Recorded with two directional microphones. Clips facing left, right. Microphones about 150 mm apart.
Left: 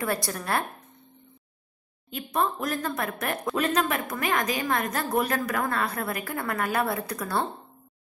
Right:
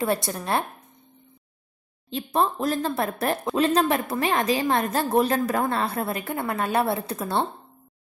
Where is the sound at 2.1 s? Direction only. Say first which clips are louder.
Right 3 dB; 30° right (ahead or behind).